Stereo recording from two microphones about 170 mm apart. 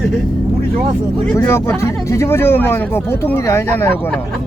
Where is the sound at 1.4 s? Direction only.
15° left (ahead or behind).